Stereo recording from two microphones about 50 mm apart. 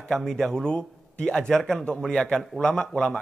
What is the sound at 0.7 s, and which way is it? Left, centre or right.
A man's voice, left.